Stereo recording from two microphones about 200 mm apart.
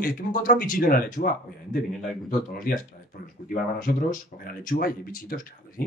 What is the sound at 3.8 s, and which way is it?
Speech, 45° left (ahead or behind).